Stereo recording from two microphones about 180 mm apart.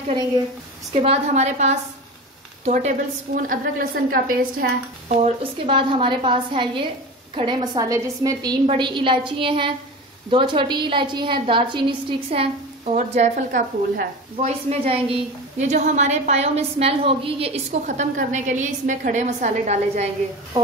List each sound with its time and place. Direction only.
0.9 s a woman's voice: 35° right (ahead or behind)
3.3 s a woman's voice: 50° right (ahead or behind)
5.4 s a woman's voice: 30° right (ahead or behind)
20.5 s a woman's voice: 20° right (ahead or behind)